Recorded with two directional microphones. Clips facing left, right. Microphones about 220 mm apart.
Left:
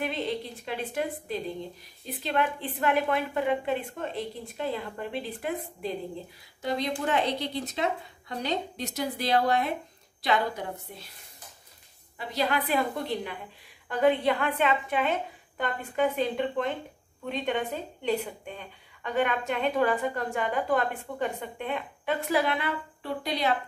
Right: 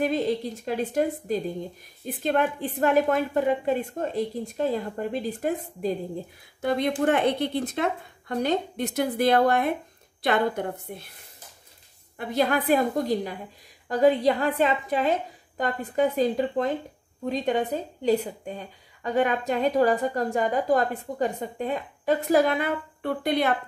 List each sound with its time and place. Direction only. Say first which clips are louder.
0.0 s a woman's voice: right 6 dB; 45° right (ahead or behind)
7.1 s a woman's voice: right 4 dB; 55° right (ahead or behind)
12.2 s a woman's voice: right 5 dB; 50° right (ahead or behind)